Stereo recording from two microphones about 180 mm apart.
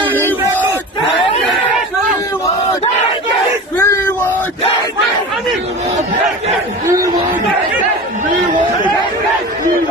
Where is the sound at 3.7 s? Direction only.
10° left (ahead or behind).